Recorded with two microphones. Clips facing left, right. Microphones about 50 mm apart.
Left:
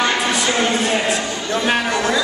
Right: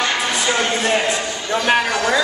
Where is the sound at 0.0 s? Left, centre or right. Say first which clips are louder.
Left 2 dB; centre.